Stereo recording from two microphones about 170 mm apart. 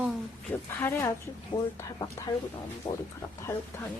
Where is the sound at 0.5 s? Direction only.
15° left (ahead or behind).